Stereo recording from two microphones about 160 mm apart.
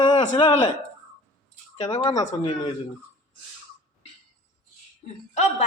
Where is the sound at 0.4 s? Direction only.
45° left (ahead or behind).